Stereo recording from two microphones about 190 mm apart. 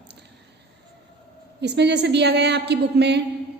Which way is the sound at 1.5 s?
60° right (ahead or behind).